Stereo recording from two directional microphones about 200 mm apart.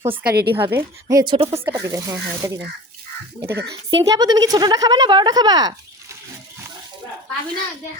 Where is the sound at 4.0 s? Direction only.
20° right (ahead or behind).